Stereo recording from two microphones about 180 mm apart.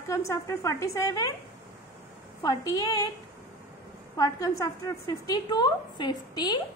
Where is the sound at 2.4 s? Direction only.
20° left (ahead or behind).